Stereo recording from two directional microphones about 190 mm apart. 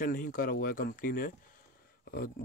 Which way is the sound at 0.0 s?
45° left (ahead or behind).